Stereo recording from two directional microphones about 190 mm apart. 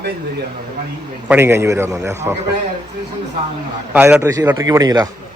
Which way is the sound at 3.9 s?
10° right (ahead or behind).